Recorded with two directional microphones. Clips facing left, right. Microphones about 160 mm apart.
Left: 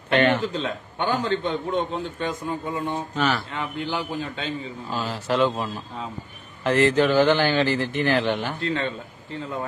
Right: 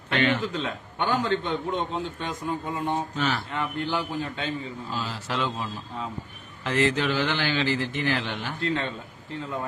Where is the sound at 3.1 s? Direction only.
80° left.